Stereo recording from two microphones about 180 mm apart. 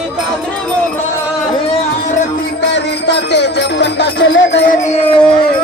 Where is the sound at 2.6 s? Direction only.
70° left (ahead or behind).